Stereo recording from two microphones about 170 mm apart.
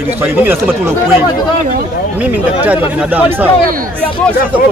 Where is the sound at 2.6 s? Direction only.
10° right (ahead or behind).